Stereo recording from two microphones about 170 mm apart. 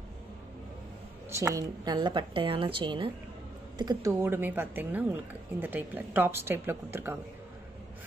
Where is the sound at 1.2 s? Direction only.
15° right (ahead or behind).